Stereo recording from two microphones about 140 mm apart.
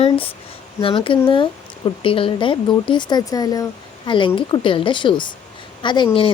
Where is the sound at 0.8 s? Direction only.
40° left (ahead or behind).